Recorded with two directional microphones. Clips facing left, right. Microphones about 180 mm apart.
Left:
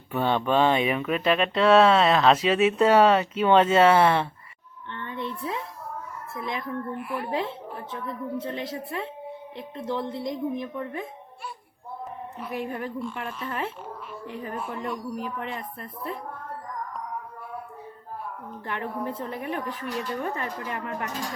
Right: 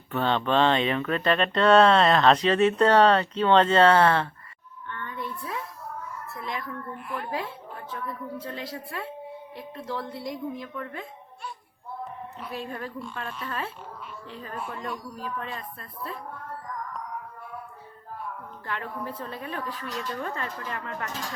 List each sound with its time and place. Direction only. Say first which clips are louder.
0.1 s speech: left 1 dB; 10° left (ahead or behind)
4.9 s a sound: left 2 dB; 25° left (ahead or behind)
6.3 s speech: left 4 dB; 20° left (ahead or behind)
7.0 s speech: left 3 dB; 5° left (ahead or behind)
7.3 s speech: left 4 dB; 25° left (ahead or behind)
12.5 s speech: left 4 dB; 20° left (ahead or behind)
18.6 s speech: left 3 dB; 20° left (ahead or behind)